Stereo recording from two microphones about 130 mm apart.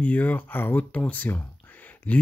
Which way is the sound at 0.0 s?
10° left (ahead or behind).